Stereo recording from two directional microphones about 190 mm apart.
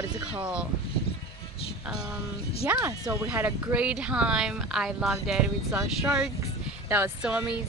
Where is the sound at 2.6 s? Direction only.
15° right (ahead or behind).